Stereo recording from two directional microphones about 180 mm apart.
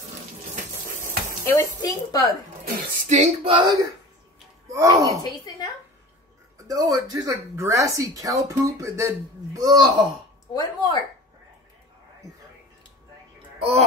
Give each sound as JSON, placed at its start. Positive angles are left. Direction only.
{"t": 1.4, "sound": "a woman's voice", "side_deg": 15}
{"t": 2.6, "sound": "speech", "side_deg": -45}
{"t": 3.4, "sound": "speech", "side_deg": -25}
{"t": 5.2, "sound": "speech", "side_deg": 20}
{"t": 6.7, "sound": "speech", "side_deg": -20}
{"t": 10.5, "sound": "speech", "side_deg": 20}
{"t": 13.6, "sound": "speech", "side_deg": -35}